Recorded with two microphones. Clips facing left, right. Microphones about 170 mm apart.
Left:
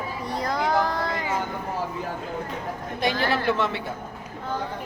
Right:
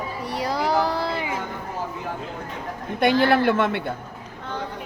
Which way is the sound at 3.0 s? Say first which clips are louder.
Right 7 dB; 60° right (ahead or behind).